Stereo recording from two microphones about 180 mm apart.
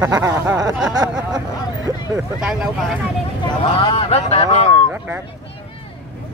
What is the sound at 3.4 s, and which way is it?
Speech, 25° left (ahead or behind).